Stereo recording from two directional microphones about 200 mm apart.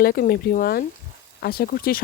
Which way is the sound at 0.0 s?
45° left (ahead or behind).